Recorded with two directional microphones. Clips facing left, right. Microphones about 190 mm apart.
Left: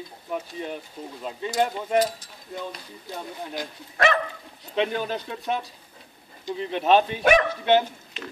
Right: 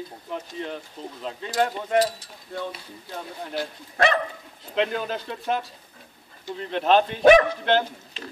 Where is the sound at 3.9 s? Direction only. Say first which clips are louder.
Right 1 dB; 35° right (ahead or behind).